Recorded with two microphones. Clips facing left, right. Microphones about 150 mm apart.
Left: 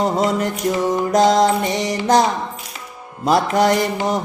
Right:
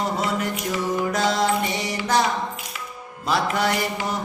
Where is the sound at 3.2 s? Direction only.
45° left (ahead or behind).